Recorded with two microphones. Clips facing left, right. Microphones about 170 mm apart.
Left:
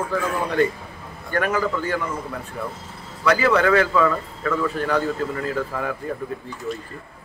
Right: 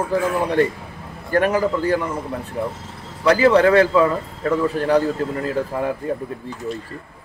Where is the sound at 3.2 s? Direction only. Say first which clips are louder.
Right 4 dB; 35° right (ahead or behind).